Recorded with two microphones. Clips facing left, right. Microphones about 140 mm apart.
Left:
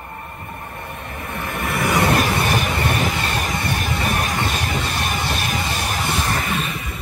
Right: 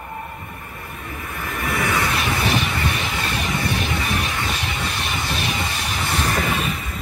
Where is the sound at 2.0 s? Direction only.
50° left (ahead or behind).